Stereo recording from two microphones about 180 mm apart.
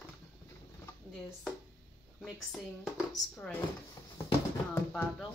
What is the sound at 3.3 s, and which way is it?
Speech, 5° left (ahead or behind).